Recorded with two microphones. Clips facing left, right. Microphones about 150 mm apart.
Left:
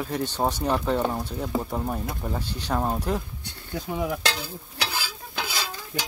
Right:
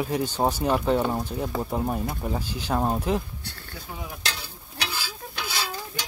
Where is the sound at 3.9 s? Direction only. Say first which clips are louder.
Left 11 dB; 90° left.